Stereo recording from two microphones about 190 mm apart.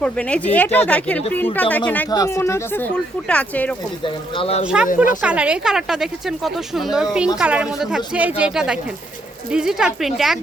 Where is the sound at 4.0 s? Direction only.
30° left (ahead or behind).